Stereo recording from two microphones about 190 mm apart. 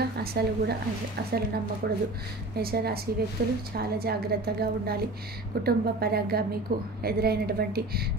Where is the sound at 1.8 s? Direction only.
55° right (ahead or behind).